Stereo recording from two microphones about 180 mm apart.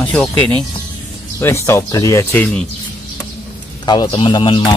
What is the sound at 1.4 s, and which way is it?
Speech, 15° left (ahead or behind).